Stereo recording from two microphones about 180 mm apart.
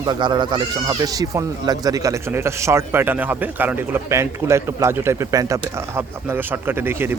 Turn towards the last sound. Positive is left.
turn(degrees=-10)  # may be behind; listen again after turning